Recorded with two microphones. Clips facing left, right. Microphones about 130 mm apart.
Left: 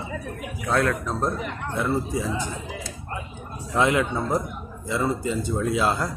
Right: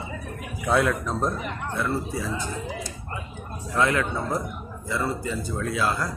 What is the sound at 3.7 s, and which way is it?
Speech, 20° left (ahead or behind).